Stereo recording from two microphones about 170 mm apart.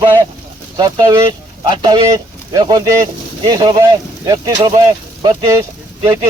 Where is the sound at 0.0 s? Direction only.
25° right (ahead or behind).